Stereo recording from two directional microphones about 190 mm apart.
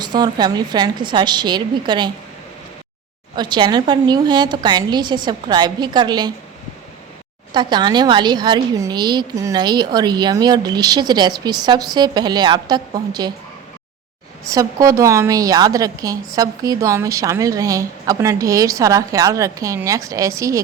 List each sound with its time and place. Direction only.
0.0 s a woman's voice: 20° right (ahead or behind)
3.3 s a woman's voice: 25° right (ahead or behind)
7.5 s a woman's voice: 25° right (ahead or behind)
14.5 s a woman's voice: 15° right (ahead or behind)